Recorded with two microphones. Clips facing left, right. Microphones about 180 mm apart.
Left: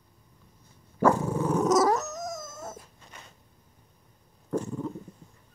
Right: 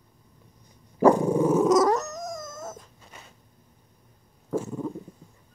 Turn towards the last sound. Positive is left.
turn(degrees=-5)  # may be behind; listen again after turning